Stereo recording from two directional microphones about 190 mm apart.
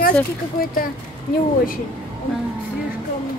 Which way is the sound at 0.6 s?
50° left (ahead or behind).